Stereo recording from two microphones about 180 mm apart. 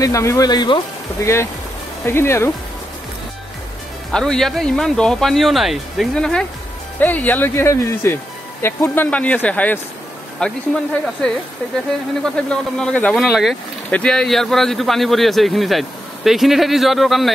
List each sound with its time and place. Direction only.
0.0 s speech: 15° left (ahead or behind)
4.1 s speech: 5° left (ahead or behind)